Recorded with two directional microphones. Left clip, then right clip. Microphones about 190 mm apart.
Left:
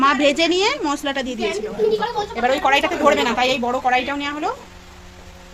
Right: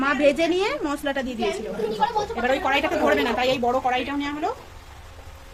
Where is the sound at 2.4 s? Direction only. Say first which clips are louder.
Left 6 dB; 20° left (ahead or behind).